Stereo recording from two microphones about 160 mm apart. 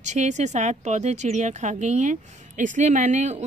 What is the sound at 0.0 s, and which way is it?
A woman's voice, 45° right (ahead or behind).